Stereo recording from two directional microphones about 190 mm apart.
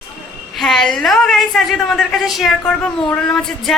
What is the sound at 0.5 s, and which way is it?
A woman's voice, centre (ahead or behind).